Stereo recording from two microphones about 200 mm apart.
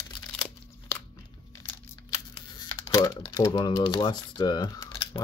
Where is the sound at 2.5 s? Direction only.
20° left (ahead or behind).